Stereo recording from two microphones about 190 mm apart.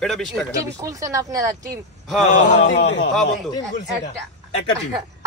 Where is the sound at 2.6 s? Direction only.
70° left (ahead or behind).